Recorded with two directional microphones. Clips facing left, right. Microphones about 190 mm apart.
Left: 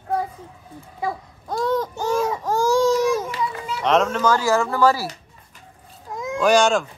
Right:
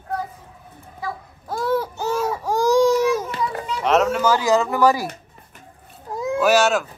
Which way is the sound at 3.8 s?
5° right (ahead or behind).